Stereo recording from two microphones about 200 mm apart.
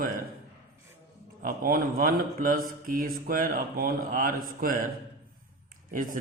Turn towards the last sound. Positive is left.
turn(degrees=-45)  # may be behind; listen again after turning